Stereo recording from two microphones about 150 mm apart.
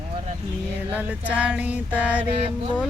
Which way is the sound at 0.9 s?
10° right (ahead or behind).